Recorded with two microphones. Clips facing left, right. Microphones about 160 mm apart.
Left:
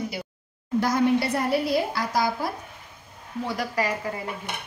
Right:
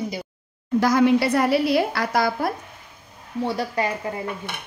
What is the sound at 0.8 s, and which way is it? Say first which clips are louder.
A woman's voice: right 4 dB; 90° right.